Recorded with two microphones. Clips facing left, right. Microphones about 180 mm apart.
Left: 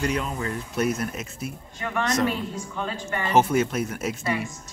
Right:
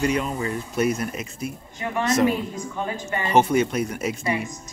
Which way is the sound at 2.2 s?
15° right (ahead or behind).